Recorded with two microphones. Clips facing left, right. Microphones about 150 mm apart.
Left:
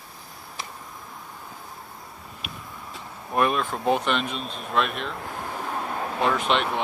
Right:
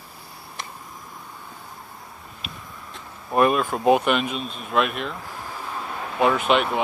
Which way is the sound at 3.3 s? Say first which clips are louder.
Right 4 dB; 5° right (ahead or behind).